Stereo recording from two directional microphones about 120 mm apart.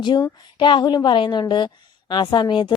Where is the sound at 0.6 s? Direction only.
40° left (ahead or behind).